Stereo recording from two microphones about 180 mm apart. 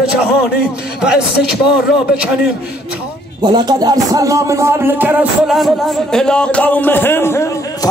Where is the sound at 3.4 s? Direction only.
25° right (ahead or behind); by 7.4 s 10° left (ahead or behind).